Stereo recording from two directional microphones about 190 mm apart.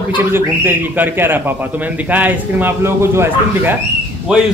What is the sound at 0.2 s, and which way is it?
A man's voice, 10° right (ahead or behind).